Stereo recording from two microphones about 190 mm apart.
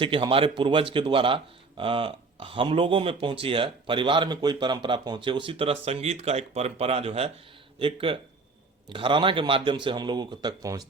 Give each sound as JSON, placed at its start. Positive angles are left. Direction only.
{"t": 0.0, "sound": "speech", "side_deg": -25}